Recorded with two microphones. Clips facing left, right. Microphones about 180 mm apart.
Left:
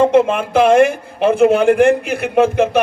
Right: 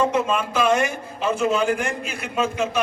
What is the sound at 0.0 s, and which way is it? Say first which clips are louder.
A man's voice: left 9 dB; 60° left (ahead or behind).